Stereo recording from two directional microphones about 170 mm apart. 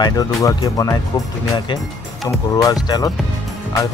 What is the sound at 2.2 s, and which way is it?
Speech, 20° left (ahead or behind).